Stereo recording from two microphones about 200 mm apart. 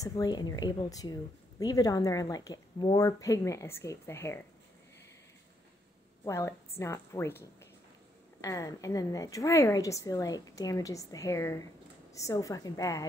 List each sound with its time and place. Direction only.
0.0 s a woman's voice: 20° left (ahead or behind)
6.2 s a woman's voice: 15° left (ahead or behind)